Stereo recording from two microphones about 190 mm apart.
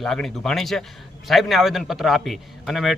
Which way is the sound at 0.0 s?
Centre (ahead or behind).